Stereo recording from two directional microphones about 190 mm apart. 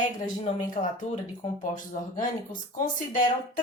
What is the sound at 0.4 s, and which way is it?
Speech, 35° left (ahead or behind).